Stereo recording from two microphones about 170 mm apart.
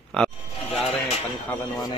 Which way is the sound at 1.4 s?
15° left (ahead or behind).